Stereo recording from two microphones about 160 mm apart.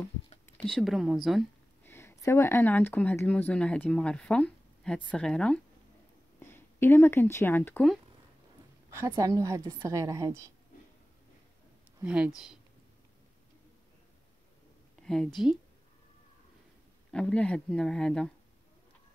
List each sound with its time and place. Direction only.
0.6 s speech: 5° left (ahead or behind)
1.8 s speech: 15° left (ahead or behind)
8.9 s a woman's voice: 20° right (ahead or behind)
12.0 s speech: 5° right (ahead or behind)
15.0 s a sound: 5° left (ahead or behind)
17.1 s speech: 5° left (ahead or behind)